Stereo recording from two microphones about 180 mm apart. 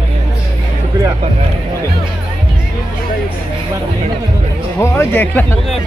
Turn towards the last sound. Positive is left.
turn(degrees=10)  # may be behind; listen again after turning